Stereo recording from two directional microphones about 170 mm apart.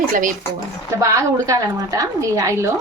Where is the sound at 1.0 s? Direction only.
20° right (ahead or behind).